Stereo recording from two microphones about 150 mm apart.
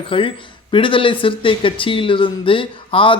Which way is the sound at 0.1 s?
35° left (ahead or behind).